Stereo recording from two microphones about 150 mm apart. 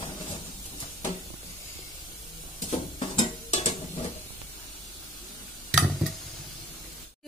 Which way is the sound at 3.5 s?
45° left (ahead or behind).